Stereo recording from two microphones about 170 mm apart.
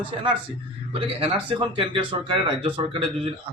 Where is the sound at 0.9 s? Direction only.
30° right (ahead or behind).